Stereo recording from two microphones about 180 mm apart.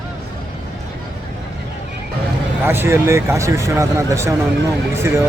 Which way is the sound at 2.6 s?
15° right (ahead or behind).